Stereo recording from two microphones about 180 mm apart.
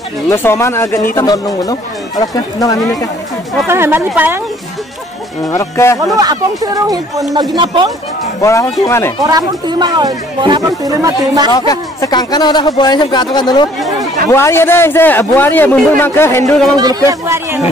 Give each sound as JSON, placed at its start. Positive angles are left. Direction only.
{"t": 0.3, "sound": "a man's voice", "side_deg": 15}
{"t": 3.6, "sound": "a woman's voice", "side_deg": -15}
{"t": 5.5, "sound": "a man's voice", "side_deg": 15}
{"t": 6.1, "sound": "speech", "side_deg": -20}
{"t": 8.4, "sound": "a man's voice", "side_deg": 20}
{"t": 9.2, "sound": "speech", "side_deg": -20}
{"t": 11.5, "sound": "a man's voice", "side_deg": 20}
{"t": 16.7, "sound": "a woman's voice", "side_deg": -20}